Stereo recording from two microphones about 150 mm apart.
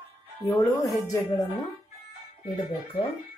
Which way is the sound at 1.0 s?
20° left (ahead or behind).